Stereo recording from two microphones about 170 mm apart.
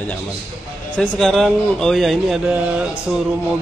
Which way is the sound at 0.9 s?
Centre (ahead or behind).